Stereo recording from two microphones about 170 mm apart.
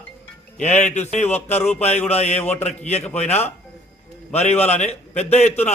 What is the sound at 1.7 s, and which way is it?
Speech, 40° left (ahead or behind).